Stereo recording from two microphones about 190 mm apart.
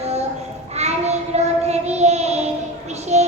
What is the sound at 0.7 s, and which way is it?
Child singing, 35° right (ahead or behind).